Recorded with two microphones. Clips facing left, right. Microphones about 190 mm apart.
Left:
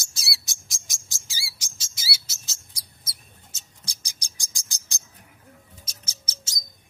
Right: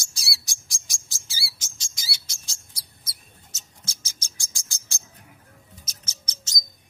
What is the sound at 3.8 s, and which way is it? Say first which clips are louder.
Cricket: right 1 dB; 15° left (ahead or behind).